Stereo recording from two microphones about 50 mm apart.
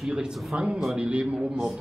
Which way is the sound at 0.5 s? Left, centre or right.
Right.